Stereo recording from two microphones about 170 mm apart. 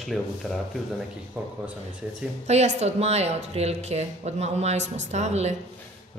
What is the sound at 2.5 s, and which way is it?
A woman's voice, 40° right (ahead or behind).